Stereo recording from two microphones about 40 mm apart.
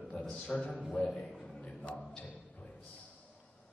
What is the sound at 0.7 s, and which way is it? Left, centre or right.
Speech, left.